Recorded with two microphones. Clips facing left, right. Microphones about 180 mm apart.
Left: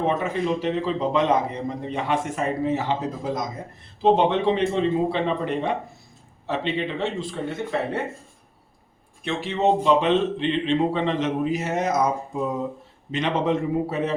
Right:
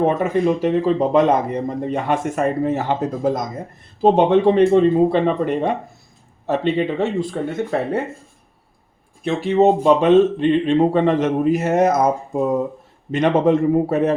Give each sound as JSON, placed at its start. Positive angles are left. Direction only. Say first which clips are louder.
{"t": 0.0, "sound": "a man's voice", "louder": "right 6 dB", "side_deg": -45}
{"t": 9.2, "sound": "a man's voice", "louder": "right 7 dB", "side_deg": -40}